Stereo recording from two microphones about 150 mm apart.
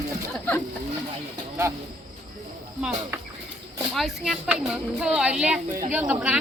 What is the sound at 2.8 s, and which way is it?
Speech, 5° right (ahead or behind).